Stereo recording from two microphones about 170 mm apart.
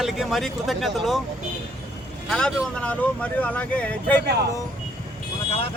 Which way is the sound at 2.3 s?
5° left (ahead or behind).